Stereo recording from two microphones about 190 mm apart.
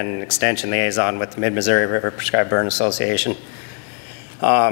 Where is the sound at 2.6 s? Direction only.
30° left (ahead or behind).